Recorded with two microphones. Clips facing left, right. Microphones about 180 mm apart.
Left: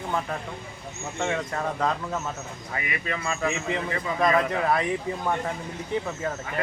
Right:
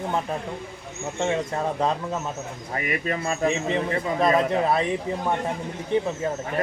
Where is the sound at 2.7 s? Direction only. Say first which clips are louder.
Right 5 dB; 40° right (ahead or behind).